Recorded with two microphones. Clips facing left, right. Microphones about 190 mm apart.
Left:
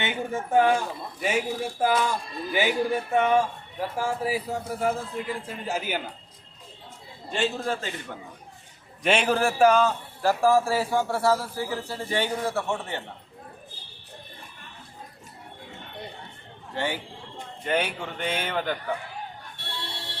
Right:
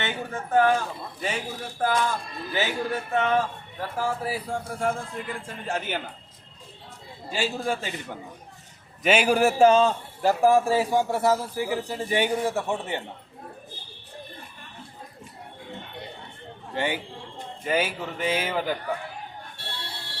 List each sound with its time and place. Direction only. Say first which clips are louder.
0.0 s a man's voice: left 2 dB; 15° left (ahead or behind)
7.3 s a man's voice: even; 5° right (ahead or behind)
9.0 s a man's voice: right 2 dB; 5° right (ahead or behind)
16.7 s a man's voice: right 2 dB; 15° right (ahead or behind)
17.6 s a man's voice: right 1 dB; 5° right (ahead or behind)